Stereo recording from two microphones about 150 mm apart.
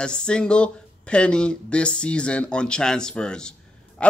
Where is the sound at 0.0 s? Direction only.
5° left (ahead or behind).